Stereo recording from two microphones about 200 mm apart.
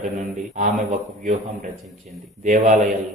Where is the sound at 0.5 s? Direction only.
40° right (ahead or behind).